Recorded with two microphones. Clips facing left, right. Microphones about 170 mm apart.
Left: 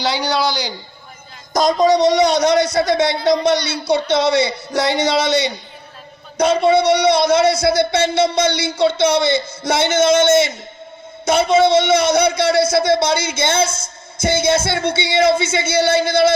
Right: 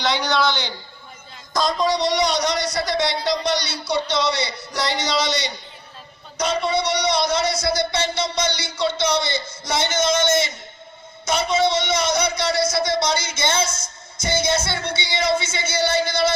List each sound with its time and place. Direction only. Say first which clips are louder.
0.0 s a man's voice: left 2 dB; 30° left (ahead or behind)
1.5 s speech: left 7 dB; 45° left (ahead or behind)
13.7 s a woman's voice: left 3 dB; 30° left (ahead or behind)
14.2 s speech: left 6 dB; 55° left (ahead or behind)